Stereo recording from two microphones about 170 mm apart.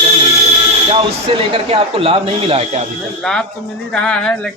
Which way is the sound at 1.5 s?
35° right (ahead or behind).